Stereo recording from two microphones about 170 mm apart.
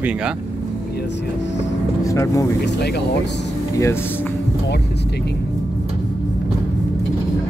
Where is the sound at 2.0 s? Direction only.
20° left (ahead or behind).